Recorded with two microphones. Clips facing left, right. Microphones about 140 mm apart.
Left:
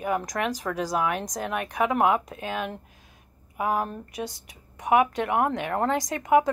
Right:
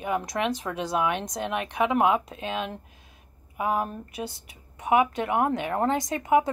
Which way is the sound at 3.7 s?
Centre (ahead or behind).